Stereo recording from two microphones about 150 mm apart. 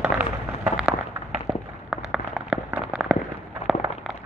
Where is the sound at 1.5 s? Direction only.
35° right (ahead or behind).